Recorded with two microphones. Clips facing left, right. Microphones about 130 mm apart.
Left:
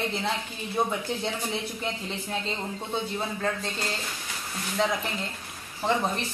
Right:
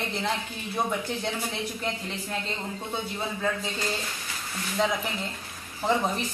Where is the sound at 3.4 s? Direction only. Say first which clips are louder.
Right 1 dB; 5° right (ahead or behind).